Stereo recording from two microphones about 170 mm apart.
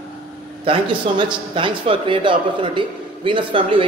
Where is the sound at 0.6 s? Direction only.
30° right (ahead or behind).